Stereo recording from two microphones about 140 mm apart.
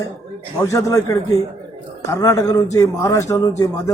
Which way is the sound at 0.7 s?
25° left (ahead or behind).